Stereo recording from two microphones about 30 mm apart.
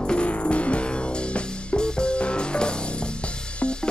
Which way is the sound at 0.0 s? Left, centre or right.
Left.